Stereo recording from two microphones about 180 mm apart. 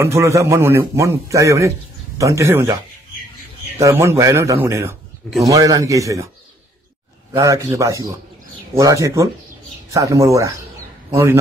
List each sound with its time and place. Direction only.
0.0 s a man's voice: 15° right (ahead or behind)
3.8 s a man's voice: 15° right (ahead or behind)
7.3 s a man's voice: 20° right (ahead or behind)